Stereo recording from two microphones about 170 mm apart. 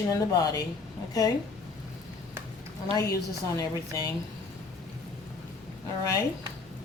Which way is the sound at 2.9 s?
20° left (ahead or behind).